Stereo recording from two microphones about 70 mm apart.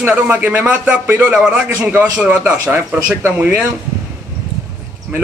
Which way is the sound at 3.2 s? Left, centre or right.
Right.